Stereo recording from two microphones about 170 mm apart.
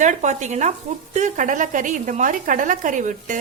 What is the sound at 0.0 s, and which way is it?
Speech, 45° right (ahead or behind).